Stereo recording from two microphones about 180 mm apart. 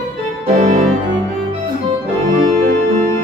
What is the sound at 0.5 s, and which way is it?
Organ, 45° right (ahead or behind).